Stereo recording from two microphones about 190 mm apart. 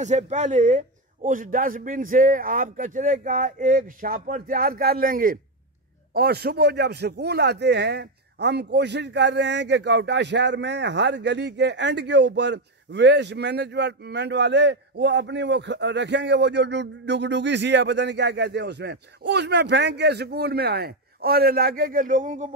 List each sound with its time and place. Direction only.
0.0 s a man's voice: 40° right (ahead or behind)